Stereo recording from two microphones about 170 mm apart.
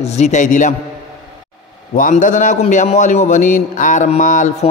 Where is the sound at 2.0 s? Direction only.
50° left (ahead or behind).